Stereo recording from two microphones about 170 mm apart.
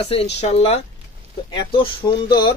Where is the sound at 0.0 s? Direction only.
35° left (ahead or behind).